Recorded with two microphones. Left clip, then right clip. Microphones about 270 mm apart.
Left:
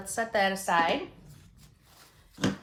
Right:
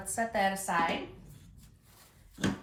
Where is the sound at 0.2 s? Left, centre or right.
Centre.